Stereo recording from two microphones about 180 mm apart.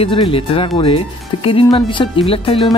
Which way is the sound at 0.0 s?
30° left (ahead or behind).